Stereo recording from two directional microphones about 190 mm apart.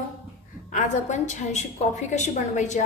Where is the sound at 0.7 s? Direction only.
40° left (ahead or behind).